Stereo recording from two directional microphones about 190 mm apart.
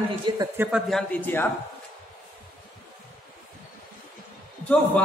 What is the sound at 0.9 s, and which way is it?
Speech, 5° left (ahead or behind).